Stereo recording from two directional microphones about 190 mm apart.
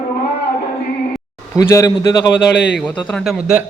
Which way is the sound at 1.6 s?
15° left (ahead or behind).